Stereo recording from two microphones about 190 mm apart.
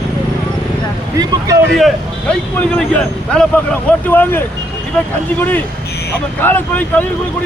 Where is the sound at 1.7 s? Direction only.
Centre (ahead or behind).